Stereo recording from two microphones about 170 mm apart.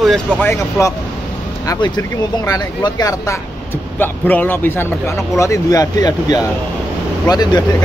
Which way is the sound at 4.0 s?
10° left (ahead or behind).